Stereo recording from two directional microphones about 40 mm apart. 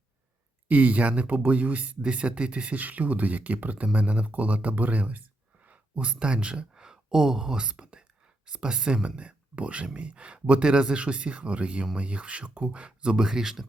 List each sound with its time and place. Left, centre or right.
0.7 s speech: right; by 13.7 s centre